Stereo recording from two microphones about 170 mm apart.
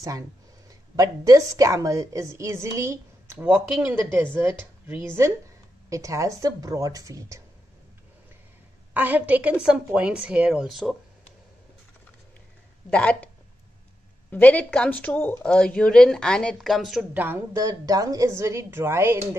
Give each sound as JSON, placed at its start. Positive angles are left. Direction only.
{"t": 0.7, "sound": "a woman's voice", "side_deg": -20}
{"t": 8.9, "sound": "a woman's voice", "side_deg": -10}
{"t": 12.9, "sound": "speech", "side_deg": 5}
{"t": 14.3, "sound": "speech", "side_deg": 10}
{"t": 17.1, "sound": "a woman's voice", "side_deg": -10}